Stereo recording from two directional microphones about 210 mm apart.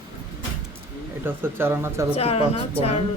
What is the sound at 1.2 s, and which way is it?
Speech, 10° right (ahead or behind).